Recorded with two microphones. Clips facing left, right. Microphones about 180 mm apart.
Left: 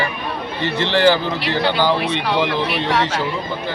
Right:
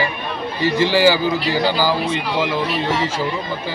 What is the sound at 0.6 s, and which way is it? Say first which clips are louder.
A man's voice: right 1 dB; 10° right (ahead or behind).